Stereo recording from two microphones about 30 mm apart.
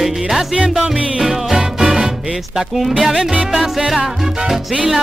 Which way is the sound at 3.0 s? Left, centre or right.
Right.